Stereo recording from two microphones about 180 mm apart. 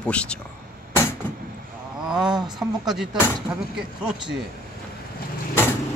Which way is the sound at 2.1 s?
5° right (ahead or behind).